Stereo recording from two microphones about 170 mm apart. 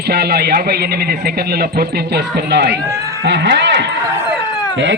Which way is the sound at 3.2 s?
90° right.